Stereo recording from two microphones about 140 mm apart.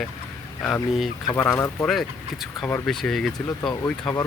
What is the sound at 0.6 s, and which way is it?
Speech, centre (ahead or behind).